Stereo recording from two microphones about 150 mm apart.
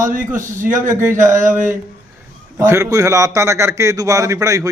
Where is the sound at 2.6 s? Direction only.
20° right (ahead or behind).